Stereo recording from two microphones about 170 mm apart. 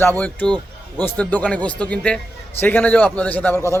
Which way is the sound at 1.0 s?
5° left (ahead or behind).